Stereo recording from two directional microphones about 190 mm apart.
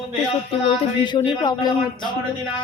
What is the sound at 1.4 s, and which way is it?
Speech, 20° left (ahead or behind).